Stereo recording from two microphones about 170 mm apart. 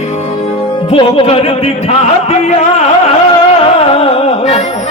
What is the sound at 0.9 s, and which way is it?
Music, 35° left (ahead or behind).